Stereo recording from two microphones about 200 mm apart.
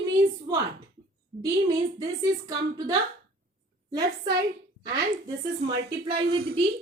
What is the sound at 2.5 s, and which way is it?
Speech, 20° right (ahead or behind).